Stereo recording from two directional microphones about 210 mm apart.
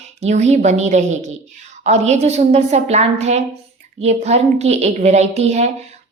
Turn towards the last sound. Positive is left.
turn(degrees=-35)  # may be behind; listen again after turning